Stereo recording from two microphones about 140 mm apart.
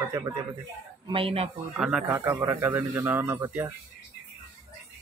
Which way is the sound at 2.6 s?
15° right (ahead or behind).